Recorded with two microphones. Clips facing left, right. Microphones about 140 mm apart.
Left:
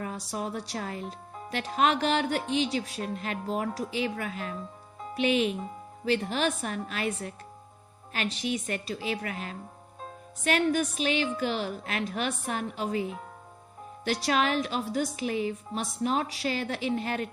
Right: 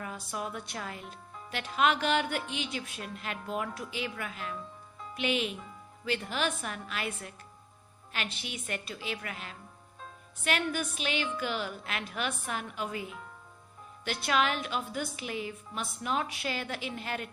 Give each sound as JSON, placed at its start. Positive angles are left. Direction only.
{"t": 0.0, "sound": "speech", "side_deg": 40}